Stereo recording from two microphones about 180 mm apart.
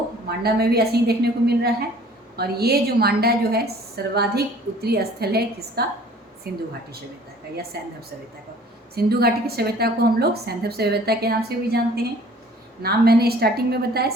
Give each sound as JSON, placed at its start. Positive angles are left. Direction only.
{"t": 0.3, "sound": "a woman's voice", "side_deg": -60}
{"t": 7.7, "sound": "a woman's voice", "side_deg": -60}
{"t": 9.0, "sound": "a woman's voice", "side_deg": -60}
{"t": 12.8, "sound": "a woman's voice", "side_deg": -60}